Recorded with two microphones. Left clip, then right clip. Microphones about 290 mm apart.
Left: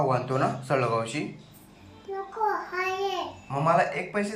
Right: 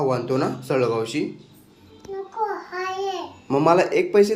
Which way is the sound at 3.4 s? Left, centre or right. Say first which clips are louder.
Right 6 dB; right.